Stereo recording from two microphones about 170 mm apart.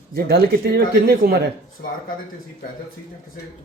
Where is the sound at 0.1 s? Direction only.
70° right (ahead or behind).